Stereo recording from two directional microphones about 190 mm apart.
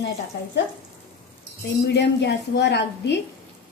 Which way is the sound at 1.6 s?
65° left (ahead or behind).